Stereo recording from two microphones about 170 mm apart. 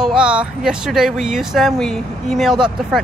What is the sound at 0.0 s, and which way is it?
Speech, 5° right (ahead or behind).